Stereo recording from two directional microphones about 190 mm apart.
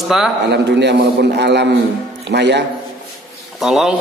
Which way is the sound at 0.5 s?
65° right (ahead or behind).